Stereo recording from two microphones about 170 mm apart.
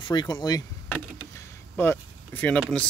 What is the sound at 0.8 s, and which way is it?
Vehicle, 10° left (ahead or behind).